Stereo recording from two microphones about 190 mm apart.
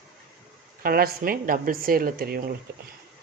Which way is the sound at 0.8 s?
50° right (ahead or behind).